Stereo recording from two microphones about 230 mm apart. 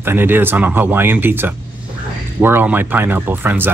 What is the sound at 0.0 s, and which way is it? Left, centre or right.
Speech, centre.